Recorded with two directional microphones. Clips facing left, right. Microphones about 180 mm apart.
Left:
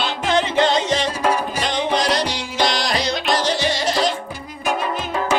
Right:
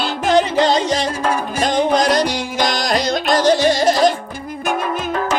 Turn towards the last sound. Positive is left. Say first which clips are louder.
# right 6 dB
turn(degrees=-45)  # may be behind; listen again after turning